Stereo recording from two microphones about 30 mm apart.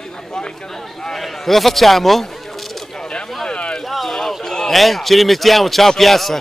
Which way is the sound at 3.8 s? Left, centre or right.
Centre.